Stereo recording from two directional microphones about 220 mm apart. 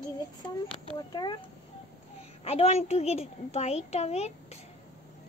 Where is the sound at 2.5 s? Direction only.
30° left (ahead or behind).